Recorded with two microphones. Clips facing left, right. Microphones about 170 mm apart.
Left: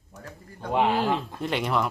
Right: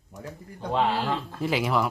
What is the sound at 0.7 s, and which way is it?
Speech, 15° left (ahead or behind).